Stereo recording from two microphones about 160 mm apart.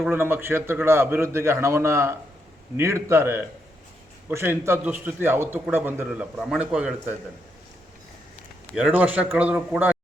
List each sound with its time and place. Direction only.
0.1 s a man's voice: 15° right (ahead or behind)
8.7 s a man's voice: 5° right (ahead or behind)